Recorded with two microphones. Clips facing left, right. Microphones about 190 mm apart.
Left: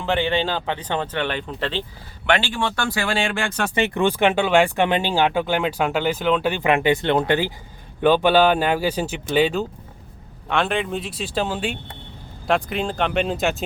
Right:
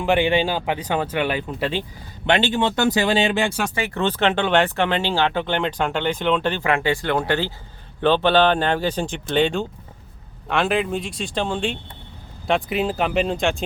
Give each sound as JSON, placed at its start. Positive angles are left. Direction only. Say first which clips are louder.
{"t": 0.0, "sound": "speech", "louder": "right 3 dB", "side_deg": -15}
{"t": 2.2, "sound": "speech", "louder": "right 2 dB", "side_deg": -20}
{"t": 3.8, "sound": "speech", "louder": "left 4 dB", "side_deg": 25}
{"t": 4.0, "sound": "speech", "louder": "left 1 dB", "side_deg": 10}
{"t": 6.6, "sound": "speech", "louder": "left 3 dB", "side_deg": 20}